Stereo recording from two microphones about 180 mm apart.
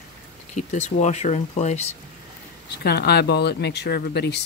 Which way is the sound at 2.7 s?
65° left (ahead or behind).